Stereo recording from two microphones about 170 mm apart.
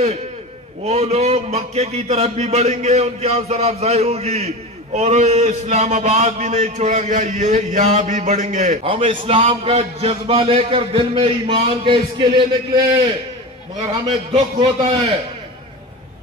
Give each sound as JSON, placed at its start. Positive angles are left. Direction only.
{"t": 0.8, "sound": "a man's voice", "side_deg": -40}
{"t": 8.8, "sound": "a man's voice", "side_deg": -30}
{"t": 14.3, "sound": "a man's voice", "side_deg": -30}